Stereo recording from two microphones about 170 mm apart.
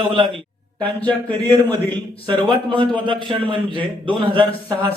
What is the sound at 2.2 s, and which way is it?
A man's voice, 25° right (ahead or behind).